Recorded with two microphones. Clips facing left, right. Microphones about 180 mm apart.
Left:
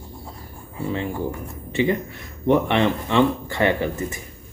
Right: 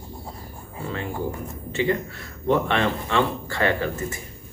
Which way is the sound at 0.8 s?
15° left (ahead or behind).